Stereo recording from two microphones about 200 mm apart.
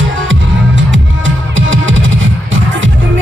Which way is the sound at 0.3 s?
70° right (ahead or behind).